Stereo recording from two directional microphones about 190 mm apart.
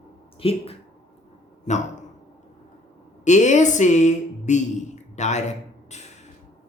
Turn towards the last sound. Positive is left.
turn(degrees=35)  # may be behind; listen again after turning